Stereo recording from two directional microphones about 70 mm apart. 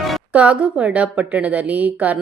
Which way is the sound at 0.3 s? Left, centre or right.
Centre.